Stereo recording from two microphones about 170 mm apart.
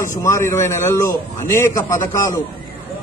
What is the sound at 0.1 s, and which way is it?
Speech, 15° left (ahead or behind).